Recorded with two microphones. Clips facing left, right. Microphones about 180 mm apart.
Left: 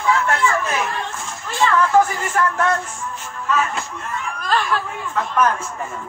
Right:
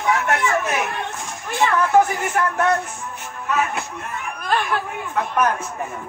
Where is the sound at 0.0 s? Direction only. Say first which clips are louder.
Left 1 dB; 20° right (ahead or behind).